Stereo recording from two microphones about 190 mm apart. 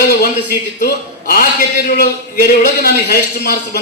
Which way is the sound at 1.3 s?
50° left (ahead or behind).